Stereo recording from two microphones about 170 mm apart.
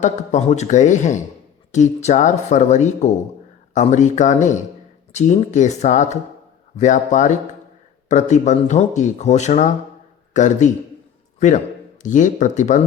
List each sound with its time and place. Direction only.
0.0 s a man's voice: 45° left (ahead or behind)